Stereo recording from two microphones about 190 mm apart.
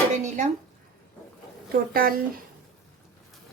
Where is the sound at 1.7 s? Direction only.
50° right (ahead or behind).